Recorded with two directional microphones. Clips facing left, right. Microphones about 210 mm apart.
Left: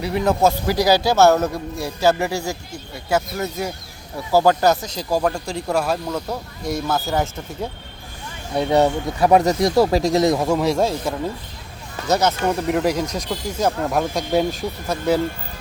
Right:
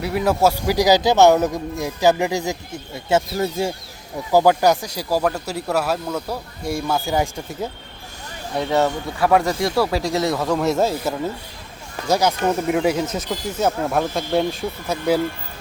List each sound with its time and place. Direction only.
0.0 s speech: 5° right (ahead or behind); by 3.7 s 25° right (ahead or behind)
4.3 s speech: 15° right (ahead or behind)
8.5 s speech: 15° left (ahead or behind)
10.5 s speech: centre (ahead or behind)